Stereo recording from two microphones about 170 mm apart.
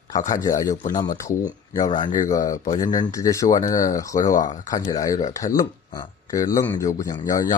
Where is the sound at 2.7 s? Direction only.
20° left (ahead or behind).